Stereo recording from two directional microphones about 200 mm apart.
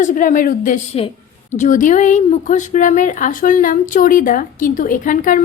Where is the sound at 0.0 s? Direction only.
40° left (ahead or behind).